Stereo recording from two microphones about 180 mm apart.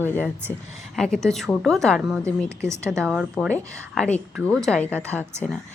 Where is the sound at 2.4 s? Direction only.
15° right (ahead or behind).